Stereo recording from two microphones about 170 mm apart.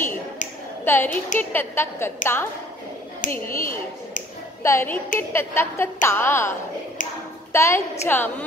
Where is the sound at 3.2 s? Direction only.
50° left (ahead or behind).